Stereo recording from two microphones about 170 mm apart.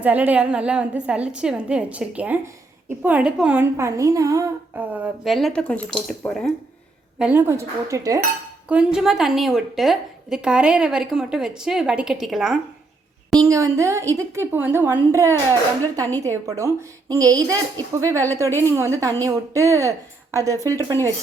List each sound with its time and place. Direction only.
0.0 s a woman's voice: 10° right (ahead or behind)
7.2 s a woman's voice: 10° right (ahead or behind)
8.7 s a woman's voice: 5° right (ahead or behind)
13.4 s a woman's voice: 20° right (ahead or behind)